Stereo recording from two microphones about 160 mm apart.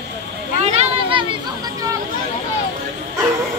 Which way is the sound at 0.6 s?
35° right (ahead or behind).